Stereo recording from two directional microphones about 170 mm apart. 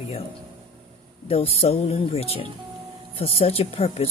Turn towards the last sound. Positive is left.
turn(degrees=35)  # may be behind; listen again after turning